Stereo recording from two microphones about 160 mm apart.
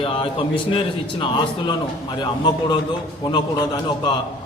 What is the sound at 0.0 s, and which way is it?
A man's voice, 35° left (ahead or behind).